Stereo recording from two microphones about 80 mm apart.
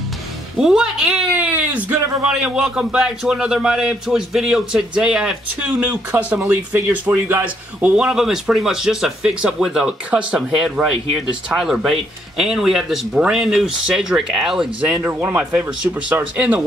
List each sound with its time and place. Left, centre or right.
0.6 s a man's voice: centre
1.3 s a sound: centre
2.2 s a man's voice: centre
15.0 s speech: right